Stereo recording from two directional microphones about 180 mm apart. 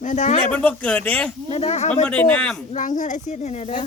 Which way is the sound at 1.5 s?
35° left (ahead or behind).